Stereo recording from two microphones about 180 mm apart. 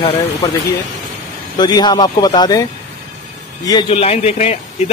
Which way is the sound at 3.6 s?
25° left (ahead or behind).